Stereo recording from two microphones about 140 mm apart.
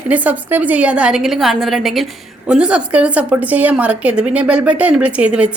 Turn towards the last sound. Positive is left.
turn(degrees=-10)  # may be behind; listen again after turning